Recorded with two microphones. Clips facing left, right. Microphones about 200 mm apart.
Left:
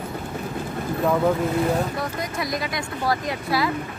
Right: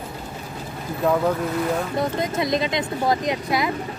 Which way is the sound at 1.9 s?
20° right (ahead or behind).